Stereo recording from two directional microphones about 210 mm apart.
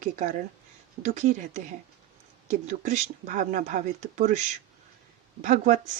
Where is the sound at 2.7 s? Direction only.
35° right (ahead or behind).